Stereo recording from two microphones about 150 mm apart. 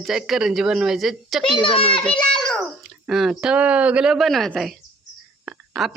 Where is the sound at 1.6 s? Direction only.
35° left (ahead or behind).